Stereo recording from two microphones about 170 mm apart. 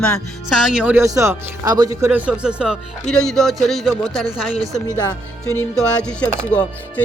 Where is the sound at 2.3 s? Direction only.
5° right (ahead or behind).